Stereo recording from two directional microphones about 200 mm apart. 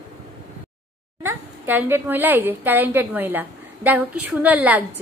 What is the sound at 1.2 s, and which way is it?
A woman's voice, 10° right (ahead or behind).